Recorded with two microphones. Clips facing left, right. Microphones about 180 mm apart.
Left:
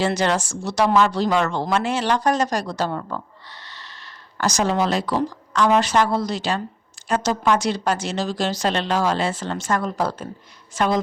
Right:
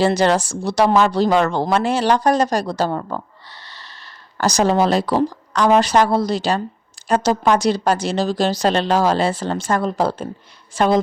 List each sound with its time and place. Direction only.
0.0 s a woman's voice: 35° right (ahead or behind)